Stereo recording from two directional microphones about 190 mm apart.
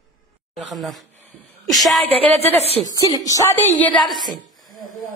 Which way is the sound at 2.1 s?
30° right (ahead or behind).